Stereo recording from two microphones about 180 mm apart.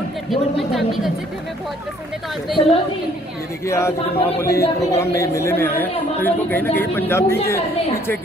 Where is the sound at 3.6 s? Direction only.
15° left (ahead or behind).